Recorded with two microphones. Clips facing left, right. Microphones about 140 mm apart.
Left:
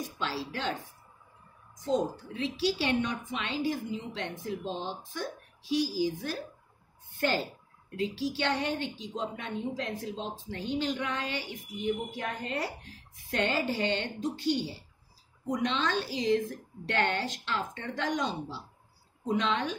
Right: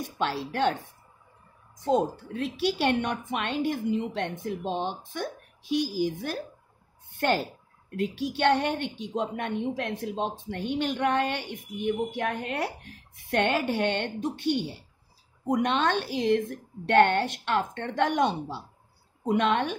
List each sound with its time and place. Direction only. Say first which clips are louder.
0.0 s a woman's voice: right 5 dB; 60° right (ahead or behind)
1.8 s a woman's voice: right 4 dB; 55° right (ahead or behind)